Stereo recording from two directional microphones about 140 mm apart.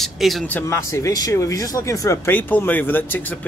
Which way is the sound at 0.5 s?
15° left (ahead or behind).